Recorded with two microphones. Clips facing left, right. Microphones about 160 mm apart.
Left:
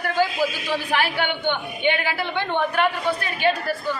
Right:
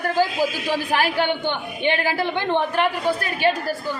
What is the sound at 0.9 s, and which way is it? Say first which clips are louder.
A woman's voice: right 3 dB; 40° right (ahead or behind).